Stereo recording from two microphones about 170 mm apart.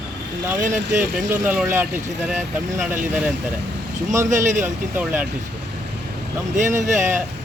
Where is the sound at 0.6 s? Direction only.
45° right (ahead or behind).